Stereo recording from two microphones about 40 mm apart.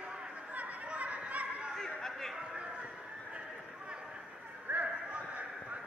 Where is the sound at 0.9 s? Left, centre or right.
Right.